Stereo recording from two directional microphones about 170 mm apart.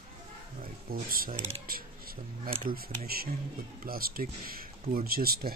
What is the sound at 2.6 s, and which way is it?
Speech, 60° right (ahead or behind).